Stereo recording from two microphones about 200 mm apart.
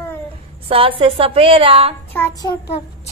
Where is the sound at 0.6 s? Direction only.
25° right (ahead or behind).